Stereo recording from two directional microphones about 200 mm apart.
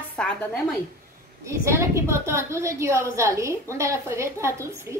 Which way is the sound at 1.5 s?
15° right (ahead or behind).